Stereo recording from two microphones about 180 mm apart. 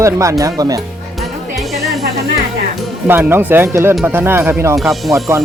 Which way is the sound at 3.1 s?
10° right (ahead or behind).